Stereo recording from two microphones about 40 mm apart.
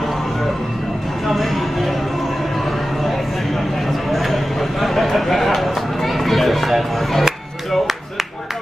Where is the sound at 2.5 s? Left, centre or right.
Centre.